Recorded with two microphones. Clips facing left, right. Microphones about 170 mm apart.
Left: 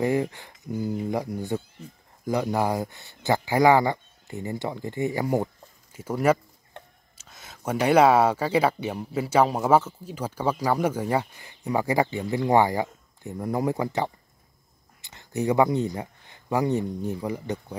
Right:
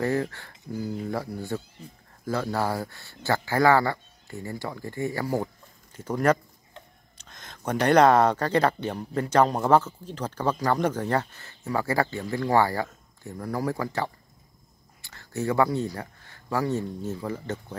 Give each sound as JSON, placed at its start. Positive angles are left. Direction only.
{"t": 0.0, "sound": "speech", "side_deg": 15}
{"t": 5.9, "sound": "speech", "side_deg": 10}
{"t": 6.7, "sound": "a sound", "side_deg": 55}
{"t": 7.2, "sound": "speech", "side_deg": 5}